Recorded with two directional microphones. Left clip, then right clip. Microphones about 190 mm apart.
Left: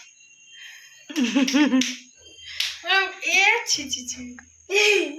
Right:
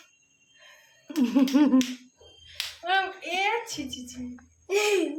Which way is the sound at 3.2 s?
65° right (ahead or behind).